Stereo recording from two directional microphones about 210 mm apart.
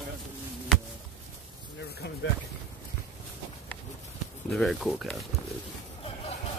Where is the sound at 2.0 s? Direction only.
50° left (ahead or behind).